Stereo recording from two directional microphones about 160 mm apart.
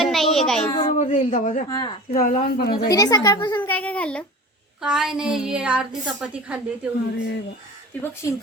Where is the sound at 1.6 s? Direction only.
25° left (ahead or behind).